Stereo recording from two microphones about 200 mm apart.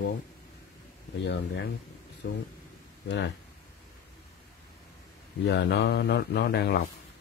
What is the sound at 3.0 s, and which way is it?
Speech, 60° left (ahead or behind).